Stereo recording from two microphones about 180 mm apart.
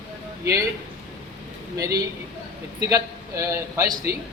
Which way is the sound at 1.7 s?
20° right (ahead or behind).